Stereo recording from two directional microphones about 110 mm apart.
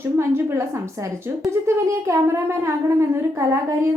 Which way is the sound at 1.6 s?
25° right (ahead or behind).